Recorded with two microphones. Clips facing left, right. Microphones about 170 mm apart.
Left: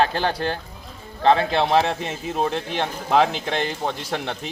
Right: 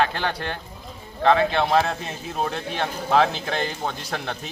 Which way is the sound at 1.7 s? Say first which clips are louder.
Left 2 dB; 20° left (ahead or behind).